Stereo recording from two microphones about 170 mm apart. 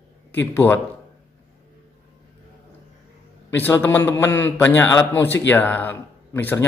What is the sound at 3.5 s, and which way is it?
Speech, 10° left (ahead or behind).